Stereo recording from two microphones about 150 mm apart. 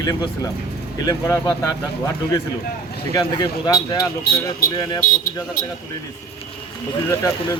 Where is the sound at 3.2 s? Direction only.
30° left (ahead or behind).